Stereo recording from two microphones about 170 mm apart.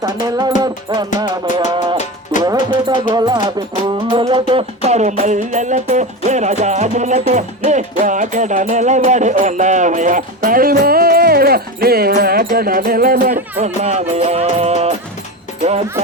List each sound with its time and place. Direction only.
0.0 s music: 25° right (ahead or behind); by 13.4 s 55° right (ahead or behind)
13.6 s music: 40° right (ahead or behind)